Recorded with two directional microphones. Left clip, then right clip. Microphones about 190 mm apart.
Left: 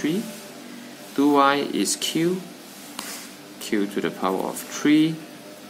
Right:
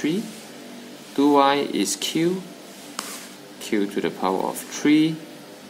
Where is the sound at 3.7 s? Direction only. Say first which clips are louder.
Right 1 dB; centre (ahead or behind).